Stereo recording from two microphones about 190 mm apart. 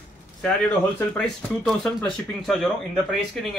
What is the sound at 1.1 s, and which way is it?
Speech, 5° left (ahead or behind).